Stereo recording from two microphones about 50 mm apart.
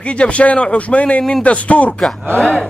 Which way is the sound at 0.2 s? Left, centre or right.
Left.